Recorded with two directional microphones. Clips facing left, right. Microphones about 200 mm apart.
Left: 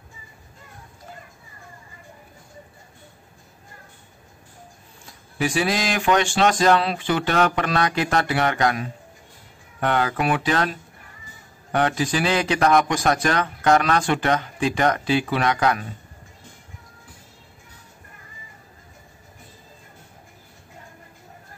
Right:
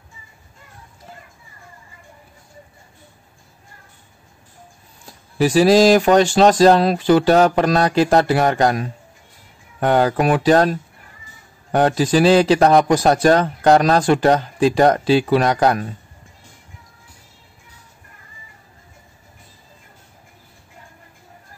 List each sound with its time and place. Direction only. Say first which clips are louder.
5.4 s a man's voice: right 11 dB; 35° right (ahead or behind)